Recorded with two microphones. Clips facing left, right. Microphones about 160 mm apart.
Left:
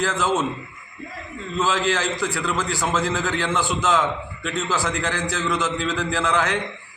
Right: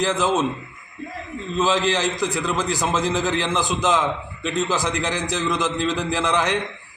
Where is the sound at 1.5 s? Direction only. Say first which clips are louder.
Right 2 dB; 15° right (ahead or behind).